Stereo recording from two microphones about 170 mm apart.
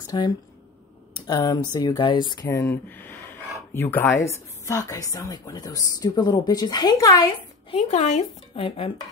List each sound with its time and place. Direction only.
0.0 s speech: 20° left (ahead or behind)
2.4 s speech: 15° left (ahead or behind)
7.7 s speech: 45° left (ahead or behind)
8.5 s dishes: 35° left (ahead or behind)